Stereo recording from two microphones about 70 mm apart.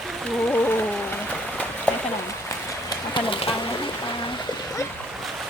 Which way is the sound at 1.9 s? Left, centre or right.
Centre.